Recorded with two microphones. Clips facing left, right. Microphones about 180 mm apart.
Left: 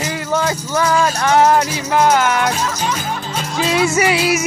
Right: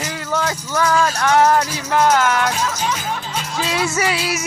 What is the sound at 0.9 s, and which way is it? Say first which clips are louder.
Music: left 1 dB; 15° left (ahead or behind).